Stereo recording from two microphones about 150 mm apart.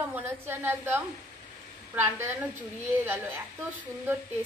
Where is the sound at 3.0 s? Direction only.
15° right (ahead or behind).